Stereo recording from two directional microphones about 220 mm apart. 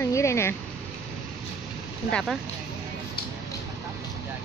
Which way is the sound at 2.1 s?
Centre (ahead or behind).